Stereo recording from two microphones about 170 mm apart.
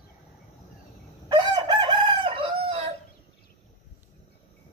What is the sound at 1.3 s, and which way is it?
Chicken, 25° right (ahead or behind).